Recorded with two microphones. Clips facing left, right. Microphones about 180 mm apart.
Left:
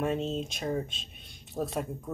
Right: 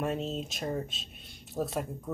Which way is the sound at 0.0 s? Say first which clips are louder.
Left 2 dB; centre (ahead or behind).